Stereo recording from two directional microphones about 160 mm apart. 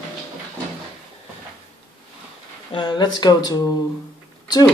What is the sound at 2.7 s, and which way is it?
Speech, 30° left (ahead or behind).